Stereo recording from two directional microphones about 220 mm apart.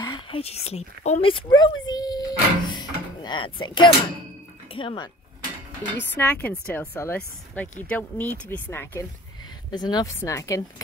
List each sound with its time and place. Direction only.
0.0 s speech: 20° left (ahead or behind)
6.1 s speech: 10° left (ahead or behind)